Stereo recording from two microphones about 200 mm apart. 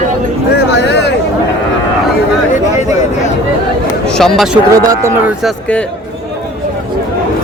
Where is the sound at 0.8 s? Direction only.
60° left (ahead or behind).